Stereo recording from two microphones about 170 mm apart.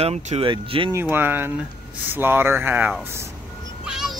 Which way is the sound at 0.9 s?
15° right (ahead or behind).